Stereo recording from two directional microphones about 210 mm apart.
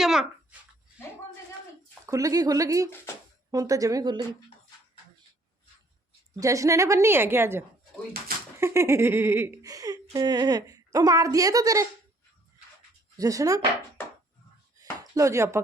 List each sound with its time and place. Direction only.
0.0 s a child's voice: centre (ahead or behind)
2.0 s a woman's voice: 15° right (ahead or behind)
6.4 s a woman's voice: 15° right (ahead or behind)
13.1 s a woman's voice: 15° right (ahead or behind)
14.8 s a sound: 15° right (ahead or behind)